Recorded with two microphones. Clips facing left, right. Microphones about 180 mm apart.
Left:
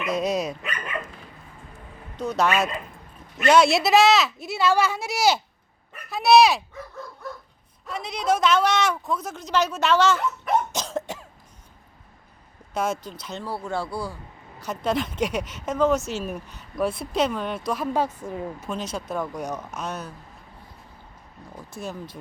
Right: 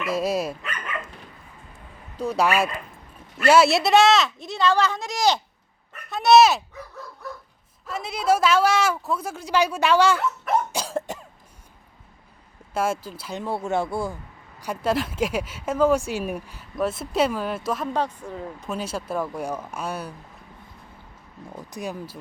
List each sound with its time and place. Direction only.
0.0 s speech: 5° right (ahead or behind)
2.1 s speech: 10° right (ahead or behind)
7.9 s speech: 5° right (ahead or behind)
12.7 s speech: 5° right (ahead or behind)
13.4 s speech: 25° right (ahead or behind)
14.6 s speech: 10° right (ahead or behind)
21.7 s speech: 15° right (ahead or behind)